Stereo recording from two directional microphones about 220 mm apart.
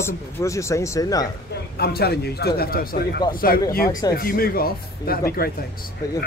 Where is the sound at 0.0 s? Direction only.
15° left (ahead or behind).